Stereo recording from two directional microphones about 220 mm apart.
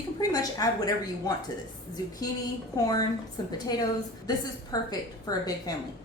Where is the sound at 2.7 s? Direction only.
15° left (ahead or behind).